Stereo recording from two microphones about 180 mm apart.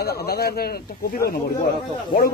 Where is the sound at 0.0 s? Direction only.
60° left (ahead or behind).